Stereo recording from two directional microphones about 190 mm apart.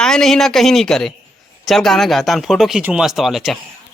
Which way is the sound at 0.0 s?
5° left (ahead or behind).